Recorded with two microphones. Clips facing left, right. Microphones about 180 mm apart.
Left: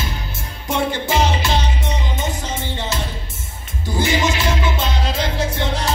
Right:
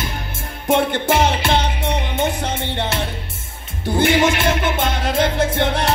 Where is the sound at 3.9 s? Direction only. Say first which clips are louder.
Right 4 dB; 55° right (ahead or behind).